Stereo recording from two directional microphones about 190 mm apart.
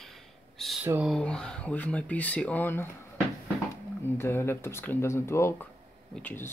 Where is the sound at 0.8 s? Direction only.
10° right (ahead or behind).